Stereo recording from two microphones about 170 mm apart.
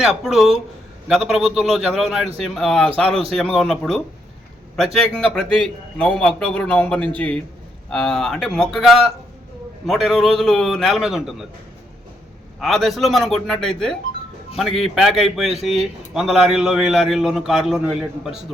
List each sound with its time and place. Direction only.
0.0 s a man's voice: centre (ahead or behind)
3.1 s a man's voice: 35° right (ahead or behind)
3.3 s a man's voice: centre (ahead or behind)
12.5 s a man's voice: centre (ahead or behind)